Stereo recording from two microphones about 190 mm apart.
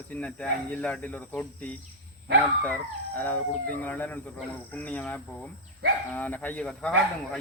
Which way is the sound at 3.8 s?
10° left (ahead or behind).